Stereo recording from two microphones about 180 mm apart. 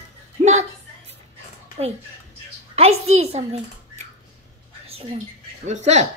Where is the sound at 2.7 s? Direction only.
35° right (ahead or behind).